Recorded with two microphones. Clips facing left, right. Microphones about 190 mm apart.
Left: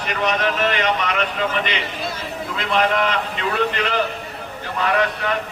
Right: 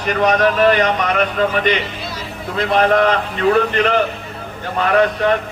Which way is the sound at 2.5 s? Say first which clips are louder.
Right 6 dB; 45° right (ahead or behind).